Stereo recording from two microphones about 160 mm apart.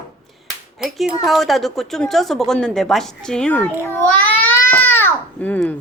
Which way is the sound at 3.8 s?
10° left (ahead or behind).